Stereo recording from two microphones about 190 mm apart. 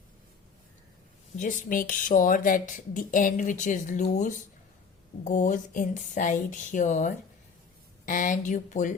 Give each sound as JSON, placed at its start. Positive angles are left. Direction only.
{"t": 1.4, "sound": "speech", "side_deg": 45}